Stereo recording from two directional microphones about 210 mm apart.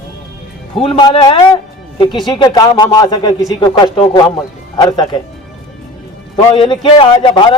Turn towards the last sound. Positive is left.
turn(degrees=25)  # may be behind; listen again after turning